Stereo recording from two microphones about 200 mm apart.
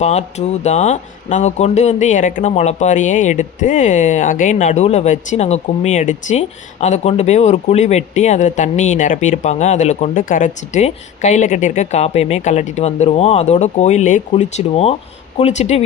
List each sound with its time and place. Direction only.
0.0 s speech: 35° left (ahead or behind)